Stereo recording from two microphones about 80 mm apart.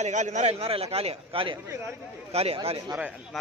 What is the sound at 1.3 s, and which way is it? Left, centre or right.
Speech, right.